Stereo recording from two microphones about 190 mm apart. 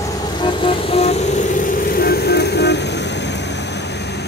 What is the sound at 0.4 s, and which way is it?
Vehicle, 30° left (ahead or behind).